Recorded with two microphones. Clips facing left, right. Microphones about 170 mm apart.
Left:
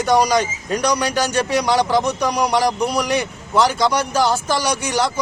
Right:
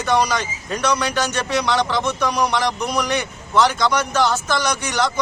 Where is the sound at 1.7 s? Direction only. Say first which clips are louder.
Left 4 dB; 35° left (ahead or behind).